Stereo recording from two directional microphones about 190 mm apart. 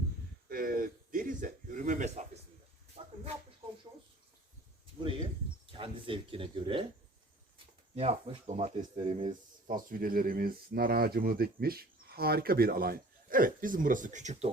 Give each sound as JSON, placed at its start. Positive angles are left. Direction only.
{"t": 0.4, "sound": "a sound", "side_deg": -50}
{"t": 5.7, "sound": "speech", "side_deg": -30}
{"t": 7.9, "sound": "speech", "side_deg": -30}